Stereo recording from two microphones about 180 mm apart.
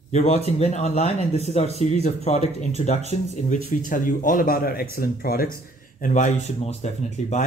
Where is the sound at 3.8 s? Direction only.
50° left (ahead or behind).